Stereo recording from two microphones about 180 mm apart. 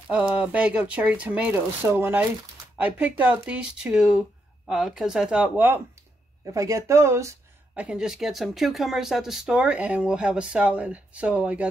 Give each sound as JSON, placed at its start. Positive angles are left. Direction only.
{"t": 0.1, "sound": "speech", "side_deg": -5}